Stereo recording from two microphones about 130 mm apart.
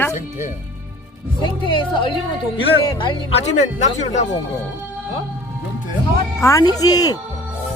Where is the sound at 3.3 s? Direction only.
60° left (ahead or behind).